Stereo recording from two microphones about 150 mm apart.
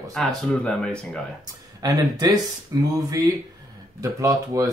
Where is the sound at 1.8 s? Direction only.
25° right (ahead or behind).